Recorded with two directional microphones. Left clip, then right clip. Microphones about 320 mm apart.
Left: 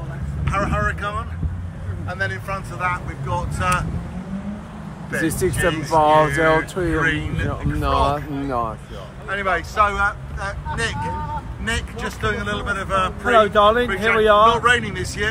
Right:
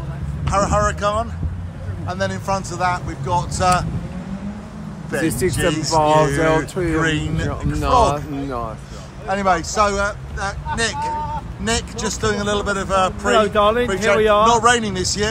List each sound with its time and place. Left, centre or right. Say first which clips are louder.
0.5 s speech: right 4 dB; centre
5.1 s speech: right 1 dB; centre
8.5 s speech: left 5 dB; left
9.3 s speech: right 4 dB; centre